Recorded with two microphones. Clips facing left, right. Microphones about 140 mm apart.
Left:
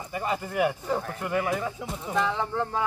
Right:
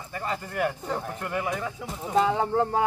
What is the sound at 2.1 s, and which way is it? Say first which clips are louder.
Speech: right 5 dB; 35° right (ahead or behind).